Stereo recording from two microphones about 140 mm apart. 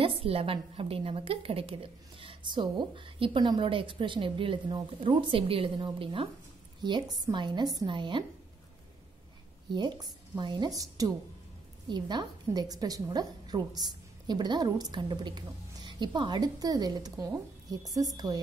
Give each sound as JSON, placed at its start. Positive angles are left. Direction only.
{"t": 0.0, "sound": "a woman's voice", "side_deg": -40}
{"t": 9.7, "sound": "a woman's voice", "side_deg": -30}